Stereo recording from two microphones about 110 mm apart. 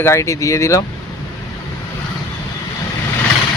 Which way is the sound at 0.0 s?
25° left (ahead or behind).